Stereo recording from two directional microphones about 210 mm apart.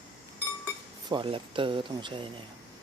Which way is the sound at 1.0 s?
25° right (ahead or behind).